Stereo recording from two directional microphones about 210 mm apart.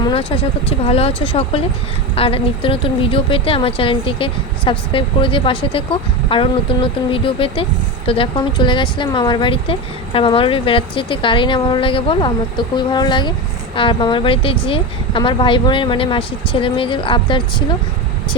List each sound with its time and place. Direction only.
0.0 s a woman's voice: 25° left (ahead or behind)